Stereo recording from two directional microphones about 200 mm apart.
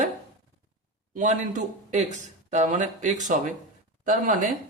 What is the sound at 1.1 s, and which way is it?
Speech, 40° right (ahead or behind).